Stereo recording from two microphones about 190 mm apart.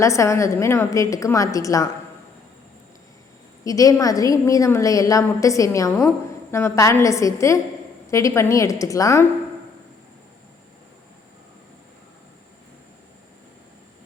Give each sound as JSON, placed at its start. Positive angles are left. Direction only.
{"t": 0.0, "sound": "a woman's voice", "side_deg": 15}
{"t": 3.6, "sound": "a woman's voice", "side_deg": 20}